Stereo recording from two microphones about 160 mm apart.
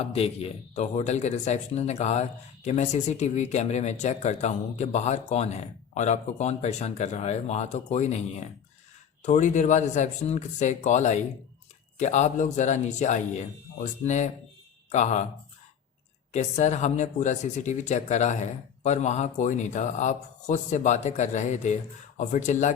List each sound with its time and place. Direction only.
0.0 s speech: 40° left (ahead or behind)
16.3 s speech: 45° left (ahead or behind)